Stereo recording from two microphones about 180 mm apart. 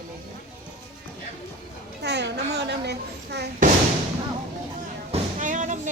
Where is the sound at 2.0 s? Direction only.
70° right (ahead or behind).